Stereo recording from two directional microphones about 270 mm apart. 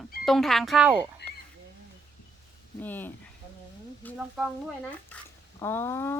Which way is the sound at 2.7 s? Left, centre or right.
Centre.